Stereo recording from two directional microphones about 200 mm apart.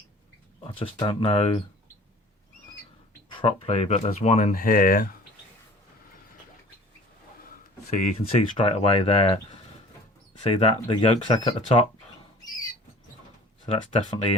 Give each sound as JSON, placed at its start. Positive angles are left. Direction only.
{"t": 0.6, "sound": "speech", "side_deg": 25}
{"t": 3.2, "sound": "speech", "side_deg": 25}
{"t": 7.9, "sound": "speech", "side_deg": 35}
{"t": 13.7, "sound": "speech", "side_deg": 25}